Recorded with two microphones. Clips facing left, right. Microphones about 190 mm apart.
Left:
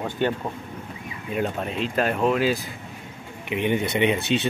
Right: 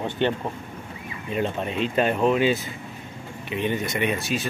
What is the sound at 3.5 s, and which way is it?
Speech, 15° left (ahead or behind).